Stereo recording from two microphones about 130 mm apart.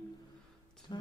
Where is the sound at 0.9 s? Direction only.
35° left (ahead or behind).